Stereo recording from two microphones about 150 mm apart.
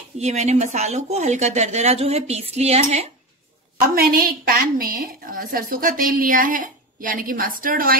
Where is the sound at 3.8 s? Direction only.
80° right.